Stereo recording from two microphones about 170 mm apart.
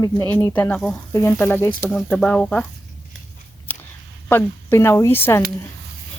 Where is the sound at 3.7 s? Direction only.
10° left (ahead or behind).